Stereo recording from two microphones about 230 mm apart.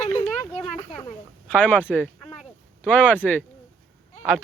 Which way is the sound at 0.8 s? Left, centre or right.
Left.